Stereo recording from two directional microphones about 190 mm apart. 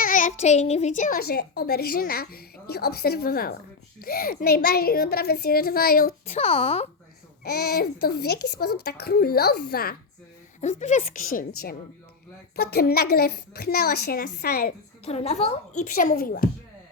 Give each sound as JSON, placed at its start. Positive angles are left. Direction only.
{"t": 0.0, "sound": "a child's voice", "side_deg": 45}
{"t": 6.3, "sound": "a child's voice", "side_deg": 30}
{"t": 7.4, "sound": "a child's voice", "side_deg": 55}
{"t": 10.6, "sound": "a child's voice", "side_deg": 40}
{"t": 15.0, "sound": "a child's voice", "side_deg": 35}